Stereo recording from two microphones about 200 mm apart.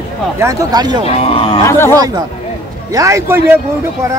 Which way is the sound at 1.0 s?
30° left (ahead or behind).